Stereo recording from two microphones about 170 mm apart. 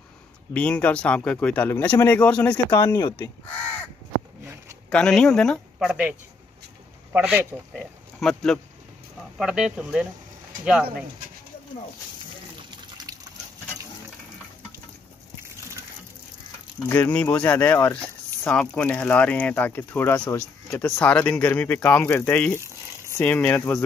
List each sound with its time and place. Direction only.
0.5 s speech: 5° left (ahead or behind)
2.7 s speech: 25° left (ahead or behind)
4.8 s speech: 5° left (ahead or behind)
7.1 s speech: 10° right (ahead or behind)
13.1 s liquid: 20° right (ahead or behind)
16.9 s speech: 10° left (ahead or behind)